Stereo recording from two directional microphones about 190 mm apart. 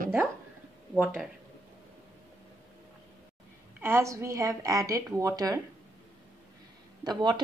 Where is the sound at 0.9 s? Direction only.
5° right (ahead or behind).